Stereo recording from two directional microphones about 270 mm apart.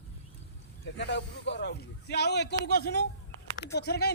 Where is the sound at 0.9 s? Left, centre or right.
Left.